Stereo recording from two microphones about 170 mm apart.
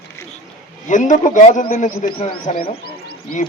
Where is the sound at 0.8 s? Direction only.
45° left (ahead or behind).